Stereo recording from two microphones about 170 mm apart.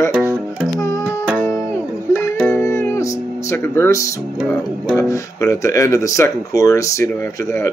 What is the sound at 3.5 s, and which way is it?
Speech, 15° left (ahead or behind).